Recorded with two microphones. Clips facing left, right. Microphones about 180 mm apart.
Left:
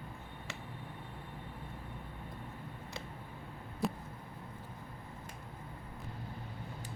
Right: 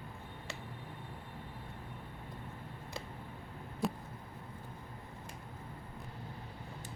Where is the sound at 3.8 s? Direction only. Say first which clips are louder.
Even; centre (ahead or behind).